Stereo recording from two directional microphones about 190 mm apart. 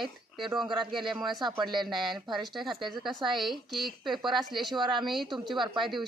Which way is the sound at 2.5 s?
Centre (ahead or behind).